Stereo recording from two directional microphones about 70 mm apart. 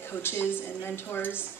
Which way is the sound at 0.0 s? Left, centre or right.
Left.